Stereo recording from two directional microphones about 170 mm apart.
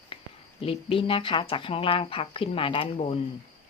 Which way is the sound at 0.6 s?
35° left (ahead or behind).